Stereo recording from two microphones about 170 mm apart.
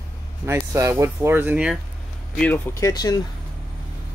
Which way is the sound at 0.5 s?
15° right (ahead or behind).